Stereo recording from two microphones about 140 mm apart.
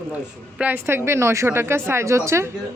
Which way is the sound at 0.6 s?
10° right (ahead or behind).